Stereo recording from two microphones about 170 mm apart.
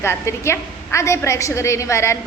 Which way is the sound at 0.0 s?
15° left (ahead or behind).